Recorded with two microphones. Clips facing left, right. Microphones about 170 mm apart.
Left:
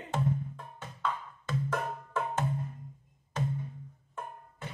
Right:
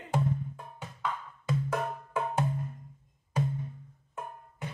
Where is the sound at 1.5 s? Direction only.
10° right (ahead or behind).